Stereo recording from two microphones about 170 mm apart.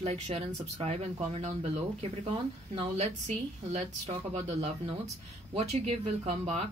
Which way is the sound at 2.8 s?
40° right (ahead or behind).